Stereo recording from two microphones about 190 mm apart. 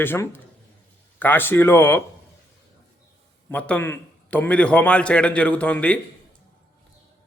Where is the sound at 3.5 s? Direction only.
5° left (ahead or behind).